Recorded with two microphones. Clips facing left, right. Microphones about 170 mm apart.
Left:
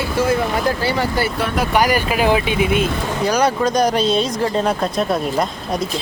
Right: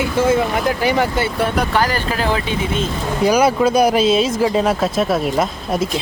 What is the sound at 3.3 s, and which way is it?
Speech, 10° right (ahead or behind).